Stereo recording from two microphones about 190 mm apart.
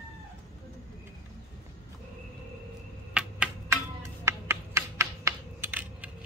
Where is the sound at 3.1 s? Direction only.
5° right (ahead or behind).